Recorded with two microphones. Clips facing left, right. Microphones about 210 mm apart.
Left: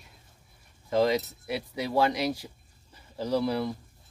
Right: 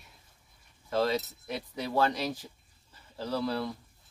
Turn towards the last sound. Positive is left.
turn(degrees=15)  # may be behind; listen again after turning